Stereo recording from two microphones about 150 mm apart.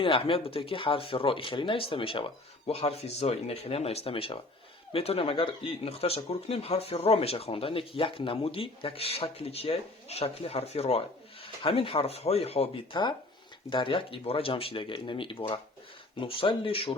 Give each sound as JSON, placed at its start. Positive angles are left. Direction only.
{"t": 0.0, "sound": "speech", "side_deg": 35}